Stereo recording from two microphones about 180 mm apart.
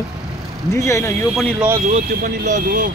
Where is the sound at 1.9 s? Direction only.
40° right (ahead or behind).